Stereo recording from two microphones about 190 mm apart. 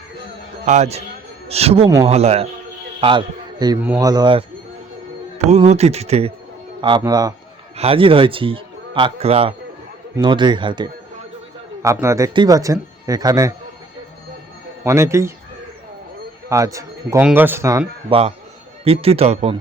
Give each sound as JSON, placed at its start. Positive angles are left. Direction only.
{"t": 0.6, "sound": "a man's voice", "side_deg": -35}
{"t": 3.8, "sound": "a man's voice", "side_deg": -10}
{"t": 5.5, "sound": "speech", "side_deg": -35}
{"t": 6.8, "sound": "a man's voice", "side_deg": -20}
{"t": 14.8, "sound": "speech", "side_deg": -15}
{"t": 16.5, "sound": "speech", "side_deg": -15}
{"t": 18.1, "sound": "speech", "side_deg": -30}